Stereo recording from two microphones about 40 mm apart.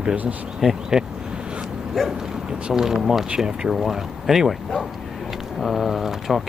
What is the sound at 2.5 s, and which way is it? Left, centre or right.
Speech, centre.